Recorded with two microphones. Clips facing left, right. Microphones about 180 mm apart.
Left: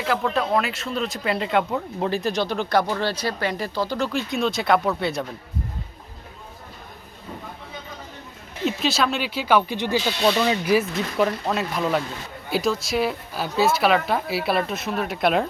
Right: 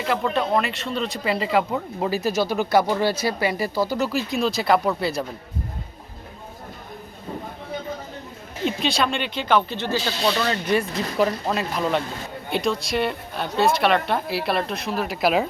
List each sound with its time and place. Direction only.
0.0 s speech: centre (ahead or behind)
8.6 s speech: centre (ahead or behind)